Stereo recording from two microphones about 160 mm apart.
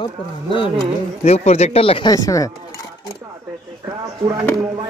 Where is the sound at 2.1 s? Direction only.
20° left (ahead or behind).